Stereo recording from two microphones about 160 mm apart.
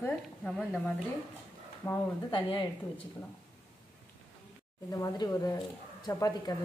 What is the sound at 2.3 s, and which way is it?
Speech, 30° left (ahead or behind).